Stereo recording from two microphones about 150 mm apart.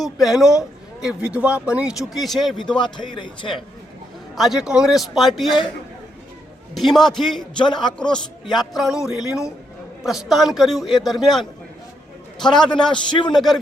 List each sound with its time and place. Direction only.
0.0 s speech: centre (ahead or behind)
2.6 s a man's voice: 30° left (ahead or behind)
4.4 s speech: centre (ahead or behind)
6.7 s speech: centre (ahead or behind)
7.6 s a man's voice: 30° left (ahead or behind)
7.9 s a man's voice: 5° left (ahead or behind)
12.9 s a man's voice: 30° left (ahead or behind)
13.3 s speech: centre (ahead or behind)